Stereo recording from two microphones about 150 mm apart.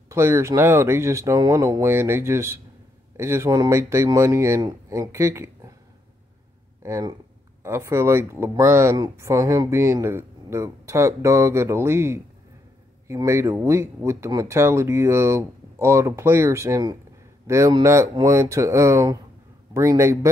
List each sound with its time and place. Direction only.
0.1 s speech: 15° right (ahead or behind)
6.8 s speech: 20° right (ahead or behind)